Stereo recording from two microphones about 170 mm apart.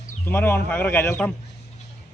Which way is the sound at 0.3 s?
15° left (ahead or behind).